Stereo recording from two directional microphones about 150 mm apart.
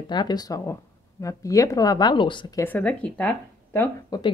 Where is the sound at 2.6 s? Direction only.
10° left (ahead or behind).